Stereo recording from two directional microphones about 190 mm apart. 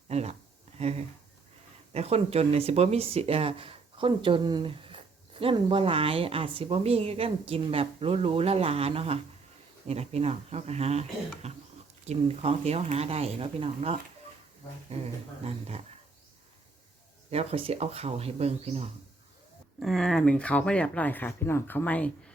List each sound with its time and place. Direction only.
0.1 s speech: 35° right (ahead or behind)
15.4 s speech: 35° right (ahead or behind)
17.3 s speech: 30° right (ahead or behind)
19.8 s speech: centre (ahead or behind)